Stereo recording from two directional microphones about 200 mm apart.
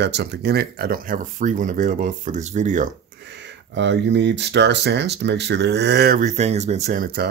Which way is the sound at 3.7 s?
60° right (ahead or behind).